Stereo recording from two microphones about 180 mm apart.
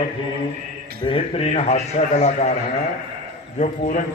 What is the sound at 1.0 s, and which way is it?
A man's voice, 35° left (ahead or behind).